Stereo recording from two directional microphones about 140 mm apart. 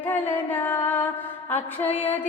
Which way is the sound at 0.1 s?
15° left (ahead or behind).